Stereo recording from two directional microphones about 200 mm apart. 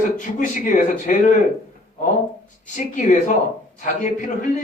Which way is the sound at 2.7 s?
40° left (ahead or behind).